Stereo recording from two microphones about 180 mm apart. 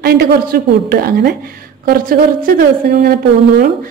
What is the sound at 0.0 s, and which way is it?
Speech, 60° right (ahead or behind).